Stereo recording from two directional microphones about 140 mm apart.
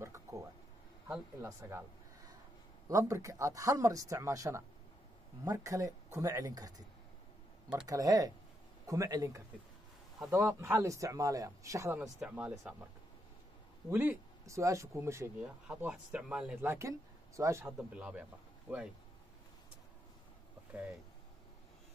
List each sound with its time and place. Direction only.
0.0 s a sound: 20° right (ahead or behind)
1.0 s speech: 15° right (ahead or behind)
7.8 s speech: 25° right (ahead or behind)
12.0 s speech: 5° right (ahead or behind)
13.8 s speech: 15° right (ahead or behind)
15.4 s speech: 10° right (ahead or behind)
17.4 s speech: 20° right (ahead or behind)
17.6 s speech: 10° right (ahead or behind)